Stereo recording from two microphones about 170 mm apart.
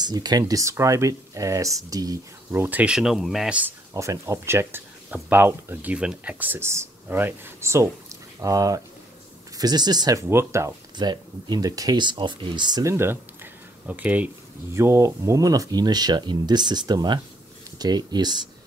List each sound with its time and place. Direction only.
0.0 s speech: 25° right (ahead or behind); by 3.7 s 5° right (ahead or behind)
3.9 s speech: 20° right (ahead or behind)